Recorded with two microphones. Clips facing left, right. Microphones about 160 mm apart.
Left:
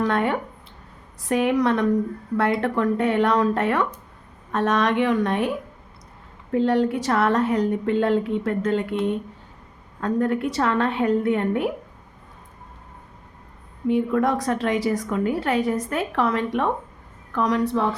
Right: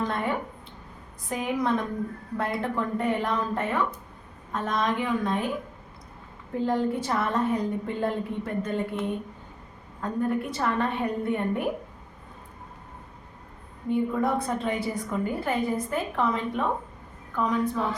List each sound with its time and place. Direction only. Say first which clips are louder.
0.0 s speech: left 6 dB; 75° left (ahead or behind)
6.5 s a woman's voice: left 6 dB; 75° left (ahead or behind)
13.8 s a woman's voice: left 5 dB; 85° left